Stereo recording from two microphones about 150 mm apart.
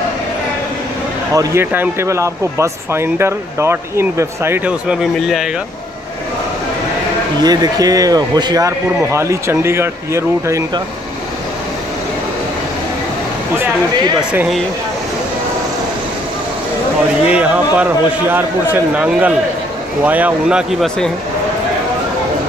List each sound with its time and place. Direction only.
1.3 s speech: 20° right (ahead or behind); by 5.5 s 5° right (ahead or behind)
7.4 s speech: 25° right (ahead or behind)
17.3 s speech: 10° right (ahead or behind)